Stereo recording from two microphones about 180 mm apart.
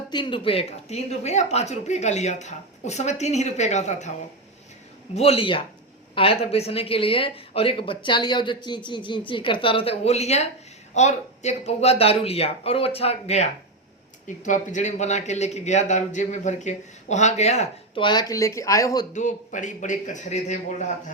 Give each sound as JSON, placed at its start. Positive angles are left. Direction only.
{"t": 0.1, "sound": "a man's voice", "side_deg": 25}
{"t": 5.1, "sound": "a man's voice", "side_deg": 35}
{"t": 19.1, "sound": "speech", "side_deg": 45}